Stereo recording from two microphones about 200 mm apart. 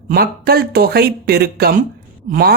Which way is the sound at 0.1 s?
50° right (ahead or behind).